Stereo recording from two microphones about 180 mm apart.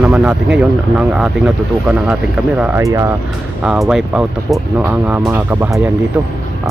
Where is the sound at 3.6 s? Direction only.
5° right (ahead or behind).